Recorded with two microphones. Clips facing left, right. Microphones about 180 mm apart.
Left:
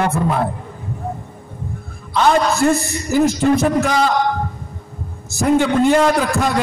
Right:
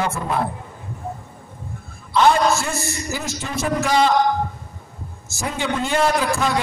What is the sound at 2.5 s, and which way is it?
A man's voice, 55° left (ahead or behind).